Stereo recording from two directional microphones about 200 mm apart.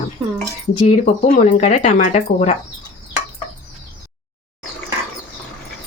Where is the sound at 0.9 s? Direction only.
35° left (ahead or behind).